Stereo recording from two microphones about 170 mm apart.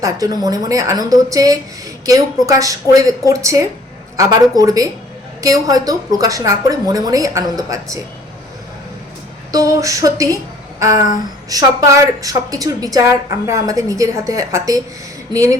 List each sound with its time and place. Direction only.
0.0 s a woman's voice: 20° right (ahead or behind)
9.5 s a woman's voice: 20° right (ahead or behind)
10.8 s a sound: 20° right (ahead or behind)
11.4 s a woman's voice: 20° right (ahead or behind)